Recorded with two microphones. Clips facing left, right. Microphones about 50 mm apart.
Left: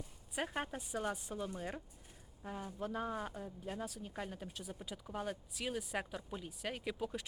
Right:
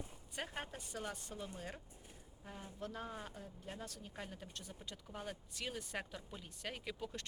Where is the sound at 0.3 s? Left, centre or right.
Centre.